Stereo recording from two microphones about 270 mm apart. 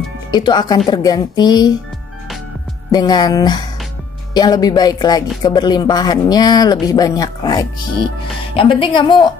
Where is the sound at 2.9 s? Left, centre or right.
Centre.